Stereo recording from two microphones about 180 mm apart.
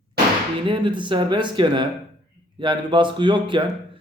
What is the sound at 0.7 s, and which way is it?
Speech, 25° right (ahead or behind).